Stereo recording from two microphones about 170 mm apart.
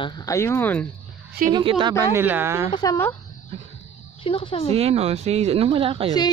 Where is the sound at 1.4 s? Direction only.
30° right (ahead or behind).